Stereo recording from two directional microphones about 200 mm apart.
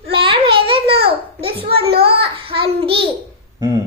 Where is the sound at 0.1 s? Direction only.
25° right (ahead or behind).